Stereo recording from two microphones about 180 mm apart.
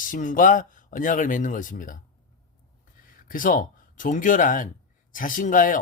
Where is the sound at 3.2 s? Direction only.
50° left (ahead or behind).